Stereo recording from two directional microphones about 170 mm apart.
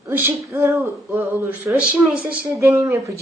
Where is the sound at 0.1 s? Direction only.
10° right (ahead or behind).